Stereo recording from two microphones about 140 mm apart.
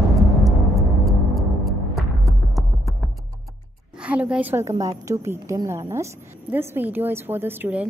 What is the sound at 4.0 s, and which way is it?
A woman's voice, 10° right (ahead or behind).